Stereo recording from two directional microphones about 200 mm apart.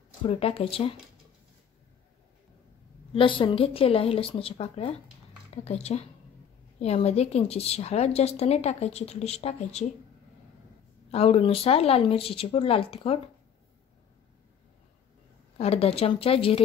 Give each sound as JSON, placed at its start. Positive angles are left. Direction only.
{"t": 0.2, "sound": "speech", "side_deg": 30}
{"t": 3.1, "sound": "a woman's voice", "side_deg": 25}
{"t": 11.1, "sound": "speech", "side_deg": 30}
{"t": 15.5, "sound": "speech", "side_deg": 30}